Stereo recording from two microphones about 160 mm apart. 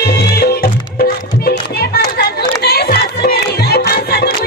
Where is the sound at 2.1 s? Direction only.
80° left.